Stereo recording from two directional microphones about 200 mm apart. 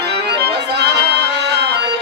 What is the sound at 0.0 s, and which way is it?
Music, 55° right (ahead or behind).